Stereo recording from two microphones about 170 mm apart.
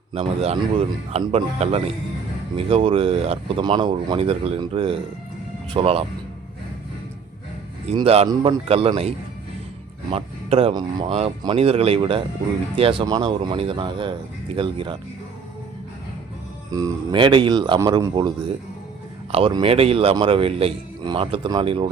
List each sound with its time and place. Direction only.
0.1 s a man's voice: 35° right (ahead or behind)
7.9 s a man's voice: 35° right (ahead or behind)
10.1 s a man's voice: 35° right (ahead or behind)
16.7 s speech: 25° right (ahead or behind)
19.3 s a man's voice: 30° right (ahead or behind)